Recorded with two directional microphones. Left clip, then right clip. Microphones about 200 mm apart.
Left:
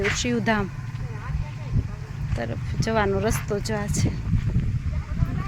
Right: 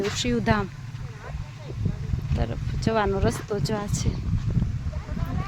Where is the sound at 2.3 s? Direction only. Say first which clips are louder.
Left 3 dB; 5° left (ahead or behind).